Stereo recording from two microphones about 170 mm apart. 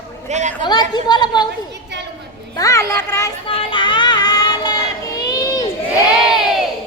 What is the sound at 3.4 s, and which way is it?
Child singing, 30° left (ahead or behind).